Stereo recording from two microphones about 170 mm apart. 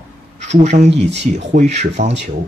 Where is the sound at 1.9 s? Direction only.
90° right.